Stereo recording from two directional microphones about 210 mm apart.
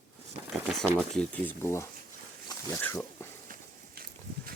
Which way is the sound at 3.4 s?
45° right (ahead or behind).